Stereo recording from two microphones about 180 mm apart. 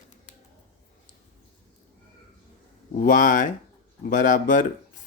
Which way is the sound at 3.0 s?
45° left (ahead or behind).